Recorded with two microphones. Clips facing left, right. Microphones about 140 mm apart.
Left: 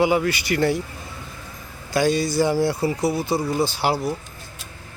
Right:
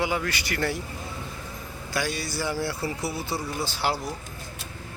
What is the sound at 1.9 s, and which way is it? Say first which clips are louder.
Speech: left 10 dB; 20° left (ahead or behind).